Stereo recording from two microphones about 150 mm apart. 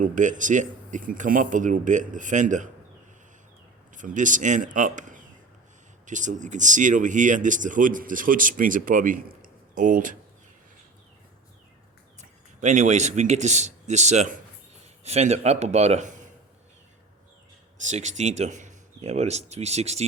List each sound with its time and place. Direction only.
0.0 s speech: 55° right (ahead or behind)
3.9 s speech: 60° right (ahead or behind)
12.2 s speech: 55° right (ahead or behind)
17.8 s speech: 50° right (ahead or behind)